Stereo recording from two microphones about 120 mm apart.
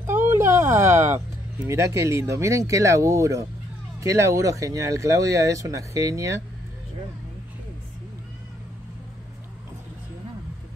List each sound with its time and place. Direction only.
0.0 s speech: 20° right (ahead or behind)